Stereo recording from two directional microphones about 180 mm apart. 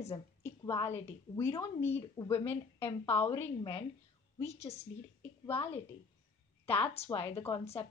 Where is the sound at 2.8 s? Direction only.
30° left (ahead or behind).